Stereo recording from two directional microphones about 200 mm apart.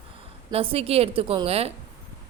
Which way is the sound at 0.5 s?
30° right (ahead or behind).